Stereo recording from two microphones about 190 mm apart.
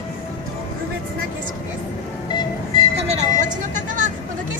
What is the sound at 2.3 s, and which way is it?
Music, 25° left (ahead or behind).